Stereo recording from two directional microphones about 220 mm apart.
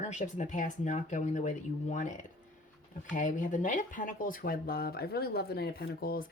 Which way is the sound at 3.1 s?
35° left (ahead or behind).